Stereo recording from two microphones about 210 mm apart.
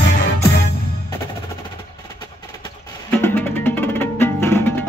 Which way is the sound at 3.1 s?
10° left (ahead or behind).